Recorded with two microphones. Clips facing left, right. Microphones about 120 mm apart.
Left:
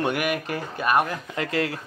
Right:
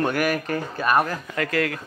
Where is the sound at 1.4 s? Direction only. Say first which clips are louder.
Right 2 dB; 25° left (ahead or behind).